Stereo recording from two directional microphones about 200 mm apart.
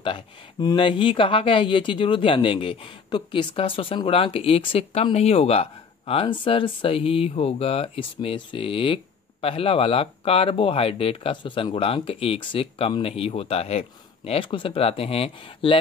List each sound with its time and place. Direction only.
0.0 s speech: 20° left (ahead or behind)